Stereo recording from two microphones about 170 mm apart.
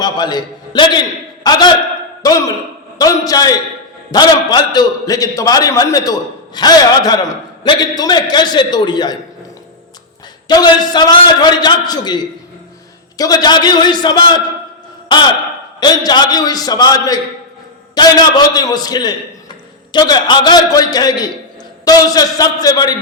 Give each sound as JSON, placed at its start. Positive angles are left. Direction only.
{"t": 0.0, "sound": "a man's voice", "side_deg": 25}
{"t": 3.0, "sound": "a man's voice", "side_deg": 20}
{"t": 10.5, "sound": "a man's voice", "side_deg": 25}
{"t": 15.8, "sound": "a man's voice", "side_deg": 25}